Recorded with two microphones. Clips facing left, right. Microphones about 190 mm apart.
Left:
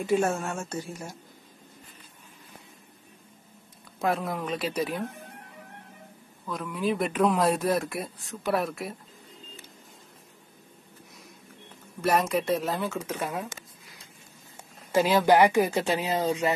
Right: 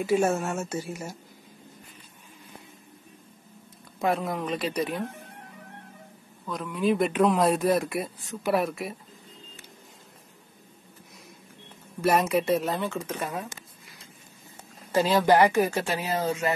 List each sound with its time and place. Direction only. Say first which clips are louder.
0.0 s speech: right 2 dB; 5° right (ahead or behind)
4.0 s speech: right 1 dB; centre (ahead or behind)
6.4 s speech: right 3 dB; centre (ahead or behind)
12.0 s speech: right 2 dB; centre (ahead or behind)
15.2 s speech: even; 10° left (ahead or behind)